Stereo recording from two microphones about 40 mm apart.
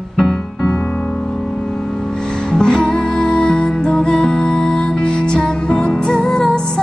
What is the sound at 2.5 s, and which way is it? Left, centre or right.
Music, centre.